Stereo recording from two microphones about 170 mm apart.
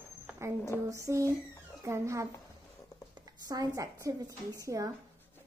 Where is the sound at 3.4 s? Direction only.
20° right (ahead or behind).